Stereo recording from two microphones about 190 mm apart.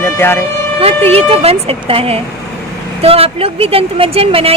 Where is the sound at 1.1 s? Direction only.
30° right (ahead or behind).